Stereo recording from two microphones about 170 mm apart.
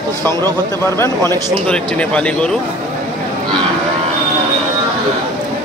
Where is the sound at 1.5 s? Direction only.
5° left (ahead or behind).